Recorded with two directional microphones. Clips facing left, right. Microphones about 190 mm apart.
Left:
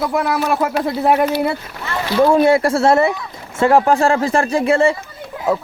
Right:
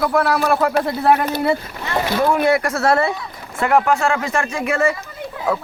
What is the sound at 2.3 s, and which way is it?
A man's voice, 30° left (ahead or behind).